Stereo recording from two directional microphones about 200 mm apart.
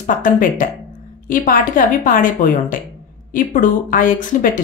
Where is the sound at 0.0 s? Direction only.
40° left (ahead or behind).